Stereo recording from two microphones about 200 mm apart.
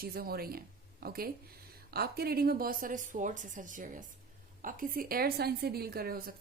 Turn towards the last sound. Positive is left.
turn(degrees=-45)  # may be behind; listen again after turning